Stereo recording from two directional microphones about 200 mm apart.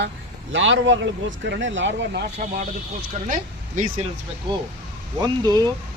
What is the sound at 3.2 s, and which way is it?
Speech, 40° right (ahead or behind).